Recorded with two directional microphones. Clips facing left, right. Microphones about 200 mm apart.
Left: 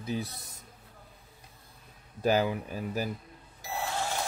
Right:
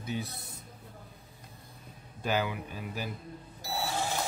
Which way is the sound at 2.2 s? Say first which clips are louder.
Left 5 dB; 40° left (ahead or behind).